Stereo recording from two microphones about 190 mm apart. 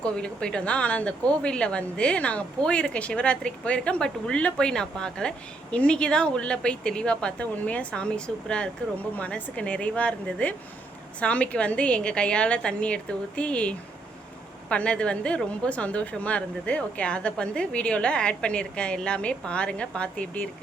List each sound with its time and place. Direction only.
0.0 s a woman's voice: 5° left (ahead or behind)